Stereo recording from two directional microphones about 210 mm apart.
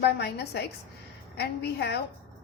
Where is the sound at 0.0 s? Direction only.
50° left (ahead or behind).